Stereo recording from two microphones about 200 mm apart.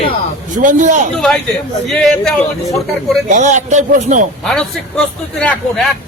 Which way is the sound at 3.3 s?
35° right (ahead or behind).